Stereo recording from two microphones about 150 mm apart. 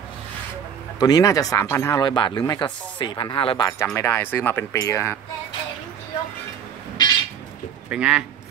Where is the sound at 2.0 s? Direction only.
30° left (ahead or behind).